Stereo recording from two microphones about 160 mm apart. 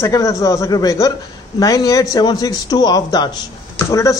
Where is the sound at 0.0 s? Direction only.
20° left (ahead or behind).